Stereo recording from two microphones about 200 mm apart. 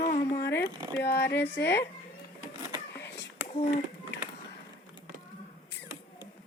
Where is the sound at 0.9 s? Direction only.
55° left (ahead or behind).